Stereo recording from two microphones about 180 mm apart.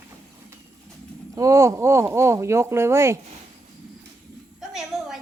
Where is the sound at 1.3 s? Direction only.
15° right (ahead or behind).